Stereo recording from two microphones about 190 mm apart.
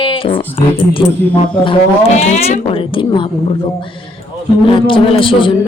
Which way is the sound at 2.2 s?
35° left (ahead or behind).